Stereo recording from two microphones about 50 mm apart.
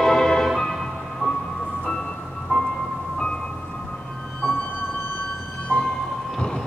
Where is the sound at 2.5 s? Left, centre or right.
Left.